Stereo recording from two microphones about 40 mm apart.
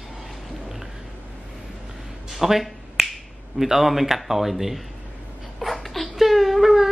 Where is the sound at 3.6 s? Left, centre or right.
Centre.